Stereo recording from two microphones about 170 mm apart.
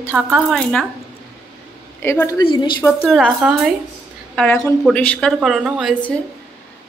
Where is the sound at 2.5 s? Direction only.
25° left (ahead or behind).